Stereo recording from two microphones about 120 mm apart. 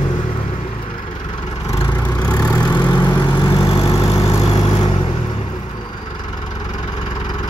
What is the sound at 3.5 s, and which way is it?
Vehicle, 50° left (ahead or behind).